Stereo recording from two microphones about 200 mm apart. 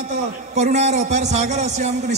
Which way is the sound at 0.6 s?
35° right (ahead or behind).